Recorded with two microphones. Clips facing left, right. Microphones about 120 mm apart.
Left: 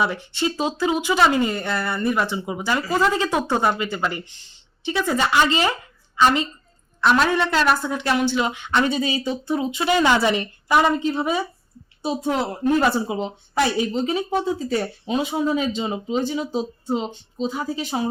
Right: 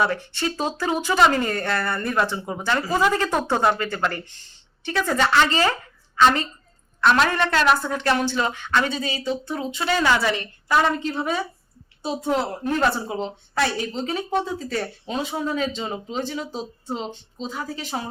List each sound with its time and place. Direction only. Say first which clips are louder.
0.0 s speech: left 1 dB; 15° left (ahead or behind)